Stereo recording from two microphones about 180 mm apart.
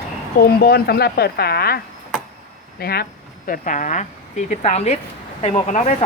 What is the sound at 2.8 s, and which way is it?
Speech, 60° left (ahead or behind).